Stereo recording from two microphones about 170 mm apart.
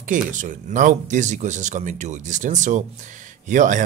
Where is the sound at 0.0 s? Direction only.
50° right (ahead or behind).